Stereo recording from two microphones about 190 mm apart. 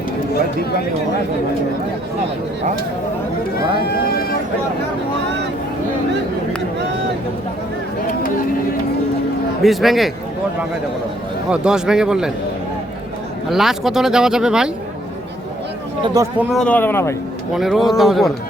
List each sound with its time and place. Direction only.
9.6 s speech: centre (ahead or behind)
11.5 s speech: 5° right (ahead or behind)
13.5 s speech: centre (ahead or behind)
16.0 s speech: 20° right (ahead or behind)
16.4 s a man's voice: centre (ahead or behind)
17.5 s speech: centre (ahead or behind)